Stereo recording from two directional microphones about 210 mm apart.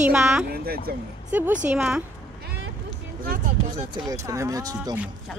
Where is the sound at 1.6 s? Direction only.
5° right (ahead or behind).